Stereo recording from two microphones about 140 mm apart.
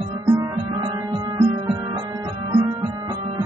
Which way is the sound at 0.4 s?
25° right (ahead or behind).